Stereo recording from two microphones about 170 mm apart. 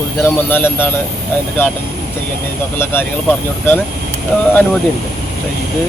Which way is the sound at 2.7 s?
15° left (ahead or behind).